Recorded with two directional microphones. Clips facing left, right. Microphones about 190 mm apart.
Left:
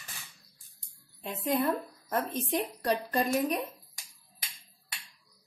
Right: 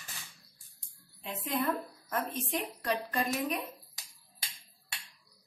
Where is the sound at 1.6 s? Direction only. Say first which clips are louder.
Left 3 dB; 35° left (ahead or behind).